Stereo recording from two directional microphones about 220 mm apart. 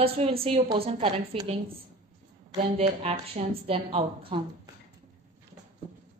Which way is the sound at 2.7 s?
25° right (ahead or behind).